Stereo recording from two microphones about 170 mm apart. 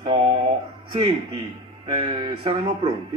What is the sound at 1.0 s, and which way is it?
Speech, 30° right (ahead or behind).